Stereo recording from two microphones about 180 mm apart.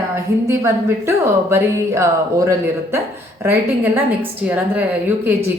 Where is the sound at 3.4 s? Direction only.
15° right (ahead or behind).